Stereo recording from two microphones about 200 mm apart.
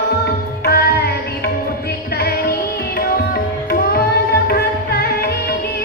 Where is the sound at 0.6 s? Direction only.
50° left (ahead or behind).